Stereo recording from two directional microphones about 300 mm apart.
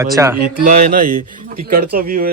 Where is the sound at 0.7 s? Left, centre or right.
Right.